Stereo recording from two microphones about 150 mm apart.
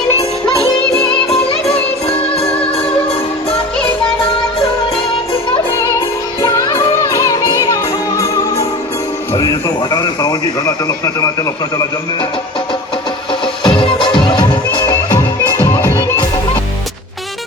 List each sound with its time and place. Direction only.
1.3 s music: 40° left (ahead or behind)
5.7 s music: 20° left (ahead or behind)
9.3 s a man's voice: 25° left (ahead or behind)
13.7 s music: 30° left (ahead or behind)
15.1 s music: 20° left (ahead or behind)